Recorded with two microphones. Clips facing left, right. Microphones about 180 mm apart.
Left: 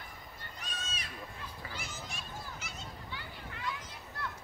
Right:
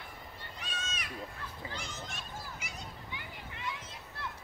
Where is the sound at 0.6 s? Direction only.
35° left (ahead or behind).